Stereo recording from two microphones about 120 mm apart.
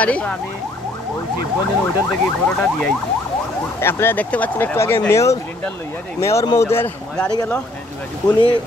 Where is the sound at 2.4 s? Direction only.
5° left (ahead or behind).